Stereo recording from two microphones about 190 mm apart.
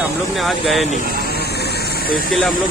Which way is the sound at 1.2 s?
55° left (ahead or behind).